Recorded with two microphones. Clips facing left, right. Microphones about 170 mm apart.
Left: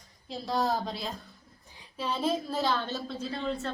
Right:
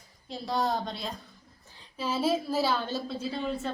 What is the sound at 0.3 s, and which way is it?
A woman's voice, centre (ahead or behind).